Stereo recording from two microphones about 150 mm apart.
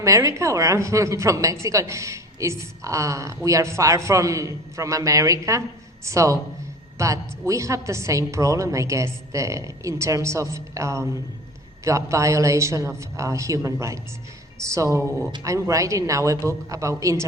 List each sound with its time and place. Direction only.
0.0 s a woman's voice: 20° right (ahead or behind)